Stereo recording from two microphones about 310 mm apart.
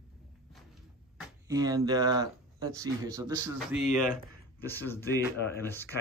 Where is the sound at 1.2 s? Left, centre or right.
Centre.